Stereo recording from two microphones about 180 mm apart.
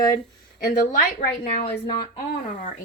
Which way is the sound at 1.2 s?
50° left (ahead or behind).